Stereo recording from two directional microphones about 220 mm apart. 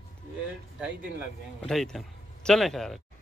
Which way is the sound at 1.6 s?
Centre (ahead or behind).